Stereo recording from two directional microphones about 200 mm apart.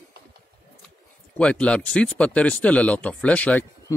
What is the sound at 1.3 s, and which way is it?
Speech, 5° left (ahead or behind).